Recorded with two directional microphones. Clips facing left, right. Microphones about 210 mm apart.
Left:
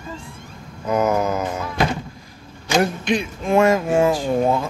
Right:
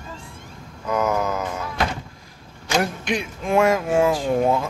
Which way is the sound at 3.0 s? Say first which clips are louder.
Left 3 dB; 10° right (ahead or behind).